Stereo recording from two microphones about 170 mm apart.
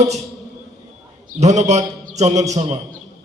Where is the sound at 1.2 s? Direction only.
40° right (ahead or behind).